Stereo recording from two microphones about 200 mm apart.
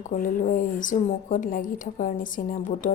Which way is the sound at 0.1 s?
45° left (ahead or behind).